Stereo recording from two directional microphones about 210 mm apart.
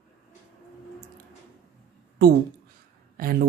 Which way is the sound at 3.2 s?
45° right (ahead or behind).